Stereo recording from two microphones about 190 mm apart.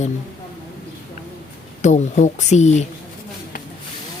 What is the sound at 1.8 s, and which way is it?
Speech, 40° left (ahead or behind).